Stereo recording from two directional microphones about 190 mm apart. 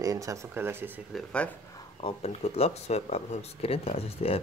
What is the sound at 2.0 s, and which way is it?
Speech, 30° left (ahead or behind).